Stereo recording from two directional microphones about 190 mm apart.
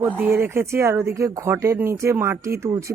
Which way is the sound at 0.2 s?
10° right (ahead or behind).